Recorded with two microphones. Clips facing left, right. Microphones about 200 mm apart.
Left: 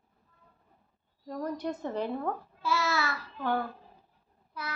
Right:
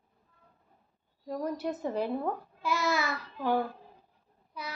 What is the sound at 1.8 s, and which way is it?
Babbling, 10° right (ahead or behind).